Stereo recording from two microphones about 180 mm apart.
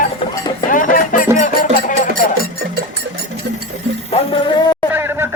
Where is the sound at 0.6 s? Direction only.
50° left (ahead or behind).